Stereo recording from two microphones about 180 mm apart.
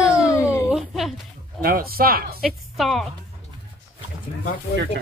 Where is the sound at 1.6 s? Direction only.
55° right (ahead or behind).